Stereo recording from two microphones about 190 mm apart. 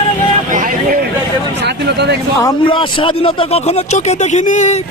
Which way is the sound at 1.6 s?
60° right (ahead or behind).